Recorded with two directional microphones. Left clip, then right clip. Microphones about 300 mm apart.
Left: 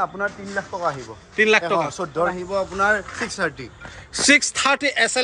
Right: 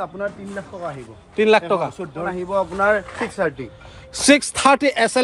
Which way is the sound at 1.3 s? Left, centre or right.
Centre.